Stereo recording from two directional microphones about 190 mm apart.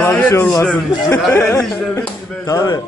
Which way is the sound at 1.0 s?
15° left (ahead or behind).